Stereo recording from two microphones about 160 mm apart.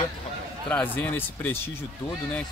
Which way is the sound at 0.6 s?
10° left (ahead or behind).